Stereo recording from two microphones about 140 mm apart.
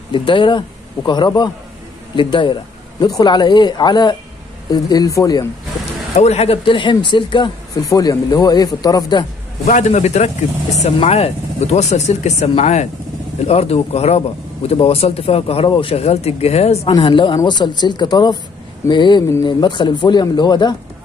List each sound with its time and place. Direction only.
0.1 s speech: 35° left (ahead or behind)
6.1 s speech: 50° left (ahead or behind); by 9.2 s 25° left (ahead or behind)
9.7 s a man's voice: 60° left (ahead or behind)
16.9 s speech: 35° left (ahead or behind)